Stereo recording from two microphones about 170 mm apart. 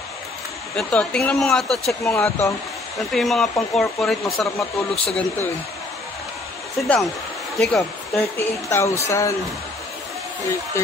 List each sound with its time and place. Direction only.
0.7 s speech: 5° left (ahead or behind)
2.1 s speech: 15° left (ahead or behind)
3.1 s speech: centre (ahead or behind)
7.5 s speech: 5° left (ahead or behind)
8.2 s speech: 15° left (ahead or behind)